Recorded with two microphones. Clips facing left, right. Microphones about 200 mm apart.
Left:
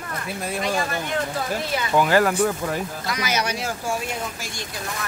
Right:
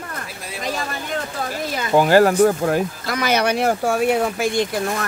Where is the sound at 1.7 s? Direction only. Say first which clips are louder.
Right 5 dB; 35° right (ahead or behind).